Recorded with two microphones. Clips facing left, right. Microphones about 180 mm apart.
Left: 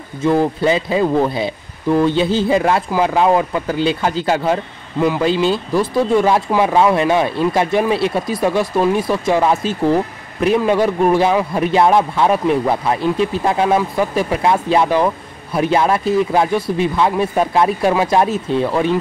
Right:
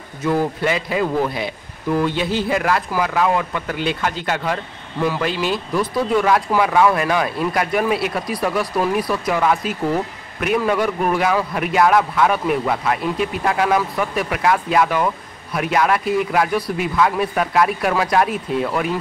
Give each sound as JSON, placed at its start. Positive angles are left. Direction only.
{"t": 0.2, "sound": "speech", "side_deg": 30}
{"t": 5.0, "sound": "speech", "side_deg": 20}
{"t": 5.3, "sound": "speech", "side_deg": 30}